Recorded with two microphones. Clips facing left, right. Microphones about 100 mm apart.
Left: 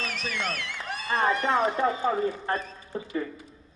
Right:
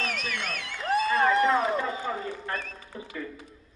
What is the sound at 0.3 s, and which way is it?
Speech, 50° left (ahead or behind).